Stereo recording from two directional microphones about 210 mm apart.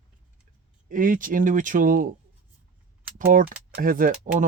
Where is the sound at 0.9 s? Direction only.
40° right (ahead or behind).